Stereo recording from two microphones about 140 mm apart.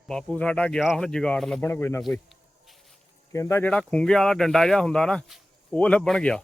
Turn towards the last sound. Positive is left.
turn(degrees=5)  # may be behind; listen again after turning